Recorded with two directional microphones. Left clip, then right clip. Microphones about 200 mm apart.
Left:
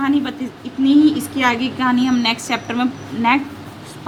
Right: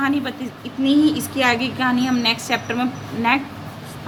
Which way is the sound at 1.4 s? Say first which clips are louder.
Left 1 dB; 20° left (ahead or behind).